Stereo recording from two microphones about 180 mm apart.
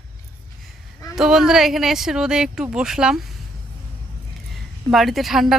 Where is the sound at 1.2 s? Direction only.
5° right (ahead or behind).